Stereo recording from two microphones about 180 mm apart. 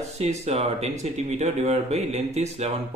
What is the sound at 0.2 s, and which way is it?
Speech, 35° right (ahead or behind).